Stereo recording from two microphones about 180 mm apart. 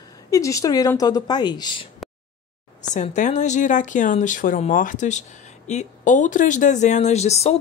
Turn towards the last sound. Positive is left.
turn(degrees=35)  # may be behind; listen again after turning